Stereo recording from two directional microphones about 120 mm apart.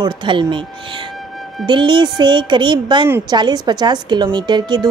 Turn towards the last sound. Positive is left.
turn(degrees=-35)  # may be behind; listen again after turning